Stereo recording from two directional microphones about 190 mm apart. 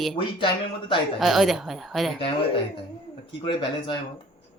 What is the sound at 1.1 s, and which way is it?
A woman's voice, centre (ahead or behind).